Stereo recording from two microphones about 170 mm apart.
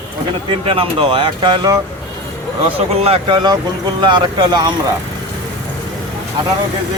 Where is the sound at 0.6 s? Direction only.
30° right (ahead or behind).